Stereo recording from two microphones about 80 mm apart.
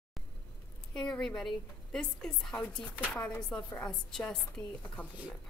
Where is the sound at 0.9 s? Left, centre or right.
Centre.